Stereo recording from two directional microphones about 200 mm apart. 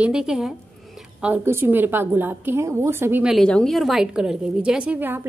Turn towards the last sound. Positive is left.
turn(degrees=-10)  # may be behind; listen again after turning